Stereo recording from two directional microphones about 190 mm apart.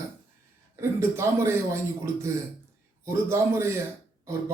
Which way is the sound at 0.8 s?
15° right (ahead or behind).